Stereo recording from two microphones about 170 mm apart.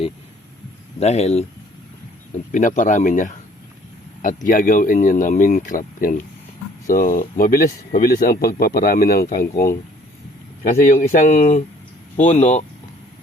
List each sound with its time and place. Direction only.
0.9 s speech: 40° left (ahead or behind)